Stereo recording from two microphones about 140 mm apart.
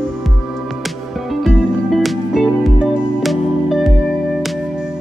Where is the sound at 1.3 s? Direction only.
5° right (ahead or behind).